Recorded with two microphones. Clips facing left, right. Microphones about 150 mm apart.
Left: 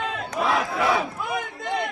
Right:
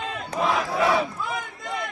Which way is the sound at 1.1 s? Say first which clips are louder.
Left 2 dB; 25° left (ahead or behind).